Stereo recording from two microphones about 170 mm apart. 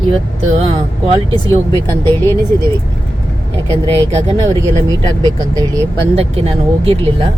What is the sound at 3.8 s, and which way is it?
Speech, 25° right (ahead or behind).